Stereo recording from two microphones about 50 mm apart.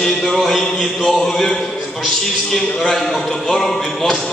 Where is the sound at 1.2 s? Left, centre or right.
Centre.